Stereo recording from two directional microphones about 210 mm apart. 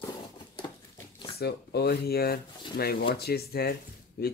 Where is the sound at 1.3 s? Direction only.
50° left (ahead or behind).